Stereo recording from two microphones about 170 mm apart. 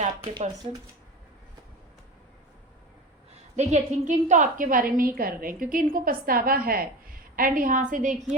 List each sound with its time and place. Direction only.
0.3 s speech: 30° right (ahead or behind)
3.5 s a woman's voice: 40° right (ahead or behind)